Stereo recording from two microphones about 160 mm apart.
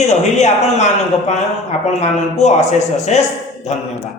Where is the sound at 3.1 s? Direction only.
45° left (ahead or behind).